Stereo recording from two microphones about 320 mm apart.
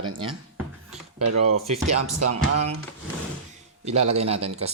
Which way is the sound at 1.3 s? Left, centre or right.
Right.